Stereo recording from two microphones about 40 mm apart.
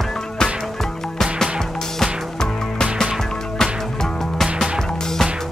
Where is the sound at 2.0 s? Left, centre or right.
Centre.